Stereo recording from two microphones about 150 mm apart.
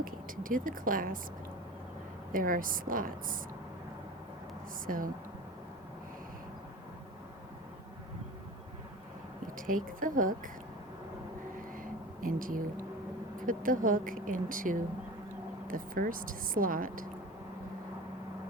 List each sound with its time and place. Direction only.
0.0 s a woman's voice: 65° right (ahead or behind)
2.3 s a woman's voice: 70° right (ahead or behind)
4.9 s a woman's voice: 65° right (ahead or behind)
9.6 s speech: 65° right (ahead or behind)
11.8 s a sound: 65° right (ahead or behind)
13.4 s a woman's voice: 65° right (ahead or behind)